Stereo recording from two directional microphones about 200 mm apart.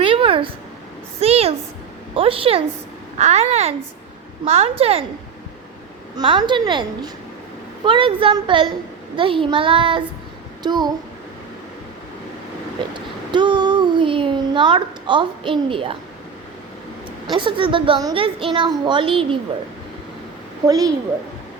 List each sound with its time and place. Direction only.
0.0 s a sound: 25° right (ahead or behind)
2.1 s a woman's voice: 25° right (ahead or behind)
6.1 s a woman's voice: 25° right (ahead or behind)
12.9 s a sound: 25° right (ahead or behind)
17.2 s a woman's voice: 25° right (ahead or behind)
20.7 s a woman's voice: 15° right (ahead or behind)